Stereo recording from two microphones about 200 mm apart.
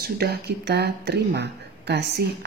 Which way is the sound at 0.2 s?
55° right (ahead or behind).